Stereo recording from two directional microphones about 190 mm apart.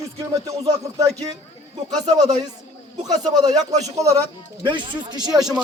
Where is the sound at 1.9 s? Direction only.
20° right (ahead or behind).